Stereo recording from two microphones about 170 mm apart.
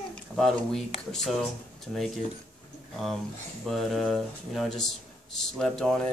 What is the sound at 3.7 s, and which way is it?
A man's voice, centre (ahead or behind).